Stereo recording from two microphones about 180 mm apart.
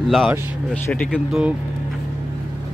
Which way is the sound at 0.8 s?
10° left (ahead or behind).